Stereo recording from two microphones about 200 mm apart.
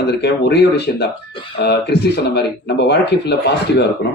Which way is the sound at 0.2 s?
55° left (ahead or behind).